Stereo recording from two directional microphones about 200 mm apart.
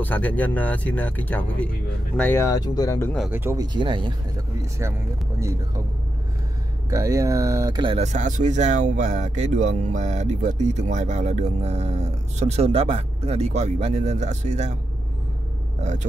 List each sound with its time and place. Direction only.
0.0 s speech: 10° left (ahead or behind)
3.2 s speech: 10° right (ahead or behind)
6.9 s speech: 15° right (ahead or behind); by 14.8 s 35° right (ahead or behind)
15.8 s speech: 35° right (ahead or behind)